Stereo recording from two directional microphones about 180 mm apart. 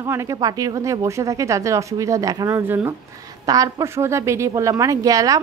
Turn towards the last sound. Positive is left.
turn(degrees=-20)  # may be behind; listen again after turning